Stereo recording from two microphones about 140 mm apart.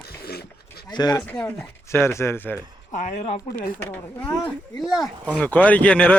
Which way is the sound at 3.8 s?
15° left (ahead or behind).